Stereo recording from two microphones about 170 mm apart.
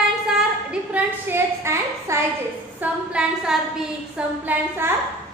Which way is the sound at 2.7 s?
5° right (ahead or behind).